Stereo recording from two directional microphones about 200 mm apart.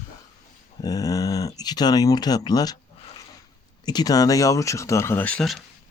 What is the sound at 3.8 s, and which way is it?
Speech, 20° left (ahead or behind).